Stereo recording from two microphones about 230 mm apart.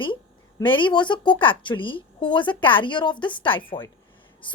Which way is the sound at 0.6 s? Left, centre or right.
Left.